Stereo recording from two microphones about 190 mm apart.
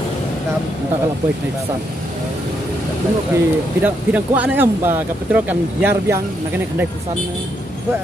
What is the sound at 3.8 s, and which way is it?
Speech, 10° right (ahead or behind).